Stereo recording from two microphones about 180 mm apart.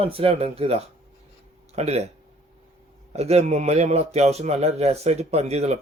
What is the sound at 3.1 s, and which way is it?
A man's voice, 35° right (ahead or behind).